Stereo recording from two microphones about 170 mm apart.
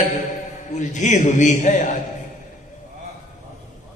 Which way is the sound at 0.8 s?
45° left (ahead or behind).